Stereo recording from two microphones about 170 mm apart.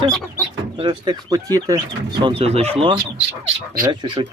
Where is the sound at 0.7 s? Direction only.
30° right (ahead or behind).